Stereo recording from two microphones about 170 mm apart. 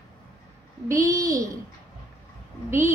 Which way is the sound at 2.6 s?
15° right (ahead or behind).